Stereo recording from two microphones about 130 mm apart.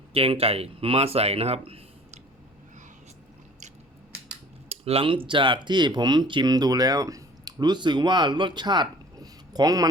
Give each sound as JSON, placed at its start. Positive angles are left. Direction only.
{"t": 0.1, "sound": "speech", "side_deg": -50}
{"t": 4.7, "sound": "speech", "side_deg": -50}